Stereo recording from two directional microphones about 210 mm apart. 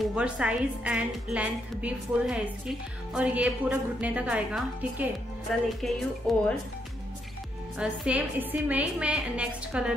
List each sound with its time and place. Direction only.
0.0 s a woman's voice: 5° right (ahead or behind)
7.8 s a woman's voice: 5° right (ahead or behind)